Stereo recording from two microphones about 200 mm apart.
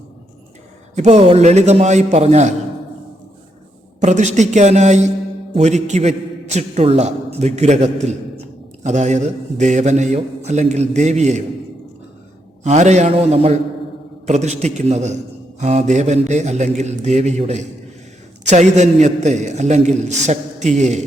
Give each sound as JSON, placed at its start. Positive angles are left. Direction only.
{"t": 0.9, "sound": "a man's voice", "side_deg": -35}
{"t": 4.0, "sound": "a man's voice", "side_deg": -35}
{"t": 12.6, "sound": "a man's voice", "side_deg": -35}